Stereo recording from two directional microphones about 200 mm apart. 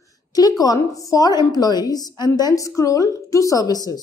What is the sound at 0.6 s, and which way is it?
A woman's voice, 15° left (ahead or behind).